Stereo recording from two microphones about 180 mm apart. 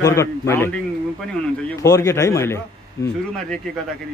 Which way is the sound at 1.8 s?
15° left (ahead or behind).